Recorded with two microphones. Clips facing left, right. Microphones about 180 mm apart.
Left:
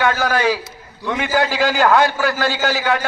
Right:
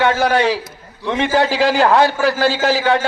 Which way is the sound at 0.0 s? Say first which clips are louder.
Right 3 dB; 30° right (ahead or behind).